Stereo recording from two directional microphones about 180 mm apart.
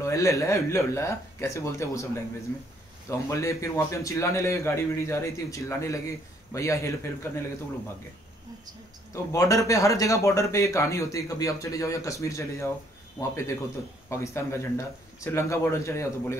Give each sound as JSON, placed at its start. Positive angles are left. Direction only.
{"t": 0.0, "sound": "a man's voice", "side_deg": 15}
{"t": 3.1, "sound": "a man's voice", "side_deg": 15}
{"t": 9.1, "sound": "a man's voice", "side_deg": 15}
{"t": 14.0, "sound": "a man's voice", "side_deg": 15}